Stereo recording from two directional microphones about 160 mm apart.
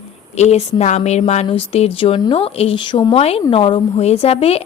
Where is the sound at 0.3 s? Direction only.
45° left (ahead or behind).